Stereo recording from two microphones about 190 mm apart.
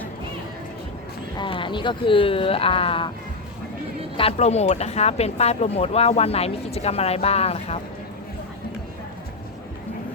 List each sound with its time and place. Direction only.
1.4 s speech: 25° left (ahead or behind)
4.2 s speech: 35° left (ahead or behind)